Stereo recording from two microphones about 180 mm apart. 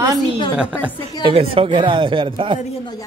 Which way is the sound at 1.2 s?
30° right (ahead or behind).